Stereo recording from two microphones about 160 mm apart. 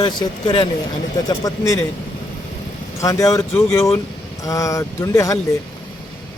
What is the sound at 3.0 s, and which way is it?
Speech, 20° left (ahead or behind).